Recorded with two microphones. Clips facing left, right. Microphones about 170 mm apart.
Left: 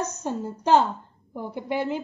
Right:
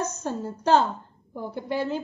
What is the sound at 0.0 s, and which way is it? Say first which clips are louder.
A woman's voice: even; 15° left (ahead or behind).